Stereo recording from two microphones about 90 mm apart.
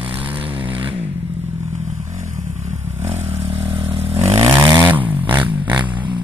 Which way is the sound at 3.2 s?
90° right.